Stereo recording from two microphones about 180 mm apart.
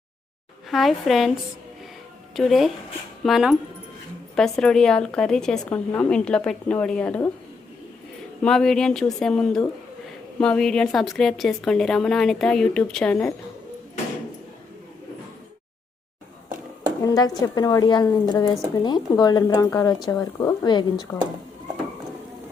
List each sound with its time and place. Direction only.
0.7 s a woman's voice: centre (ahead or behind)
2.3 s a woman's voice: centre (ahead or behind)
8.4 s a woman's voice: centre (ahead or behind)
17.0 s speech: 20° left (ahead or behind)